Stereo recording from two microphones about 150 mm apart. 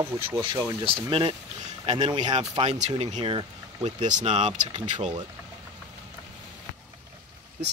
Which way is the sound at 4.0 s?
55° right (ahead or behind).